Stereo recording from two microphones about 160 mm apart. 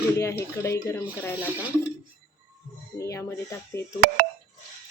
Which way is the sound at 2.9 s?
20° left (ahead or behind).